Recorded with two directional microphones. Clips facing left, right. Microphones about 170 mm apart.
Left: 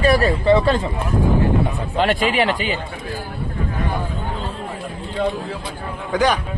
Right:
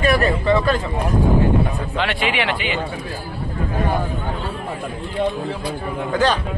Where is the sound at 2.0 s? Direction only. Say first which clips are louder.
Left 5 dB; 40° left (ahead or behind).